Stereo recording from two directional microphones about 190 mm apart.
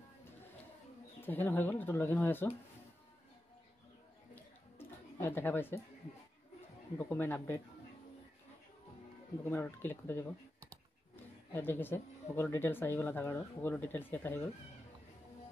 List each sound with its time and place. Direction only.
1.2 s speech: 10° left (ahead or behind)
5.2 s speech: 10° left (ahead or behind)
7.0 s speech: 10° left (ahead or behind)
9.4 s speech: 10° left (ahead or behind)
11.5 s speech: 10° left (ahead or behind)